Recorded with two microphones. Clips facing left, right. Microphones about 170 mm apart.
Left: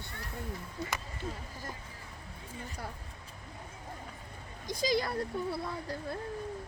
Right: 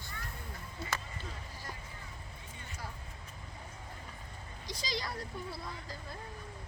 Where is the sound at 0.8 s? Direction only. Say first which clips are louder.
Left 1 dB; 15° left (ahead or behind).